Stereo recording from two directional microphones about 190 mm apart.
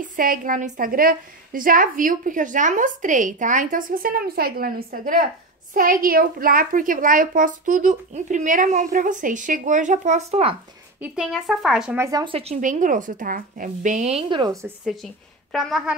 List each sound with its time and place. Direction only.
0.0 s a woman's voice: 45° right (ahead or behind)
11.0 s speech: 5° right (ahead or behind)
12.0 s a woman's voice: 20° right (ahead or behind)
12.5 s a woman's voice: 45° right (ahead or behind); by 14.7 s 20° right (ahead or behind)
15.5 s speech: centre (ahead or behind)